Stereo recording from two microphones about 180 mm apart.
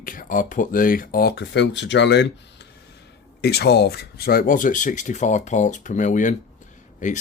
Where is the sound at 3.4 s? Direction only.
65° left (ahead or behind).